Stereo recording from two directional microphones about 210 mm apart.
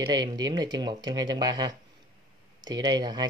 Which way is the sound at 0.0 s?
20° right (ahead or behind).